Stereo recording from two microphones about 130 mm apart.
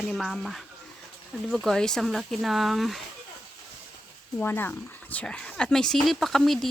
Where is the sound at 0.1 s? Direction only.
Centre (ahead or behind).